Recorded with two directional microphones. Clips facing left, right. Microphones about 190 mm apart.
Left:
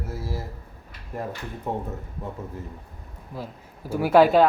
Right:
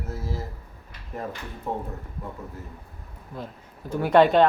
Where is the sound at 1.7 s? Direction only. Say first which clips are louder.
Left 1 dB; 15° left (ahead or behind).